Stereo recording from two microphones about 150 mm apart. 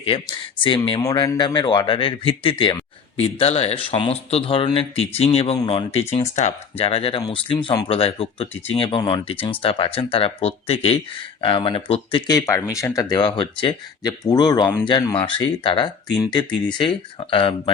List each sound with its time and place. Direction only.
0.0 s speech: 35° left (ahead or behind)
12.3 s speech: 20° left (ahead or behind)